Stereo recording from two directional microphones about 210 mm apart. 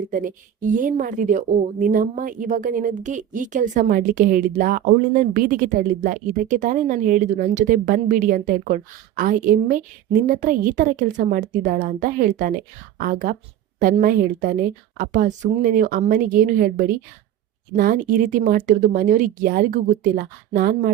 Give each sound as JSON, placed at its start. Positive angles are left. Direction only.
{"t": 0.1, "sound": "a woman's voice", "side_deg": -40}